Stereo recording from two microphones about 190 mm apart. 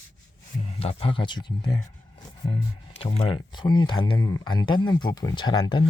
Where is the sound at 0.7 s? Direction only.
30° left (ahead or behind).